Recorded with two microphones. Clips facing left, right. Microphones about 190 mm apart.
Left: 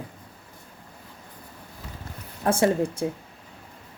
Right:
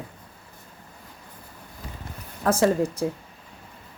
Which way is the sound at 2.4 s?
30° left (ahead or behind).